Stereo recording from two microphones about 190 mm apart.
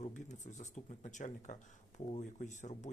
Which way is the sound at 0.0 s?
35° left (ahead or behind).